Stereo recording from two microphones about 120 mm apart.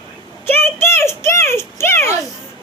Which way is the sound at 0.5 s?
20° left (ahead or behind).